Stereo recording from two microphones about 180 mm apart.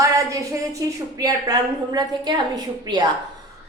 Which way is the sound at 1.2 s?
20° right (ahead or behind).